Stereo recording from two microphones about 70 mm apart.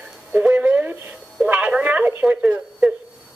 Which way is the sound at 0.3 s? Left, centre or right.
Centre.